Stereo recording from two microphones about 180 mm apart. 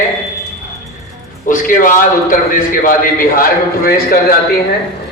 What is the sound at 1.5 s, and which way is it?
A man's voice, 50° left (ahead or behind).